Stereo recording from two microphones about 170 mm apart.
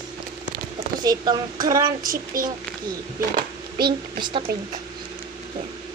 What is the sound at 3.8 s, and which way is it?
Speech, 25° right (ahead or behind).